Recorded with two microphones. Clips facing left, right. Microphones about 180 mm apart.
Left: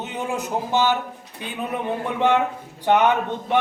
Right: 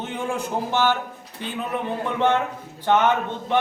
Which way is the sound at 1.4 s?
15° left (ahead or behind).